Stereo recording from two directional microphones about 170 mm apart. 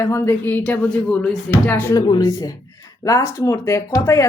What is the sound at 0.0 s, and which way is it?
Speech, 15° left (ahead or behind).